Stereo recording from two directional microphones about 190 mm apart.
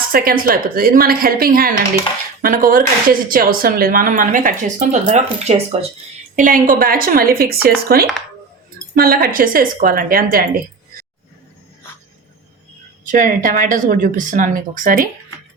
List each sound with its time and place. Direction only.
0.1 s speech: 50° right (ahead or behind)
13.1 s speech: 45° right (ahead or behind)